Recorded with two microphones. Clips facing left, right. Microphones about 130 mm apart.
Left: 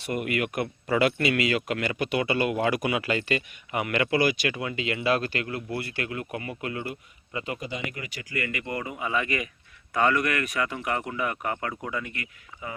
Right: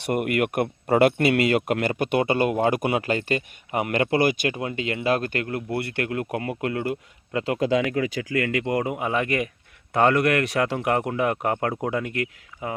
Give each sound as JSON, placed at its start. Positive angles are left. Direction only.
{"t": 0.0, "sound": "speech", "side_deg": -60}
{"t": 7.3, "sound": "a man's voice", "side_deg": -85}